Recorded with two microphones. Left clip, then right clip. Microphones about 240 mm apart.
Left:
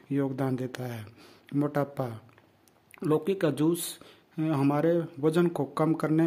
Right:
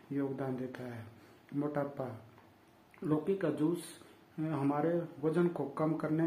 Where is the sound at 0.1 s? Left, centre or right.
Left.